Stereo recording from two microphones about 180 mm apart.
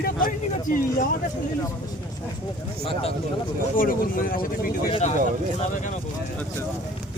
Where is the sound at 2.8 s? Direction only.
30° left (ahead or behind).